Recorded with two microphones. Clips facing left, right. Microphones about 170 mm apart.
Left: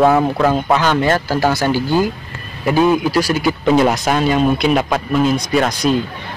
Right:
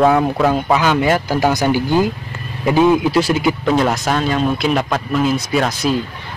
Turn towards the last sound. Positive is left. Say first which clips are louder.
# left 2 dB
turn(degrees=0)  # may be behind; listen again after turning